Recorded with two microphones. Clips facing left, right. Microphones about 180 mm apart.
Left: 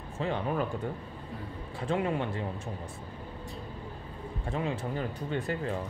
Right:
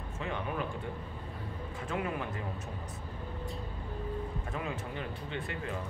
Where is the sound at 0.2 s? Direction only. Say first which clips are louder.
Left 6 dB; 30° left (ahead or behind).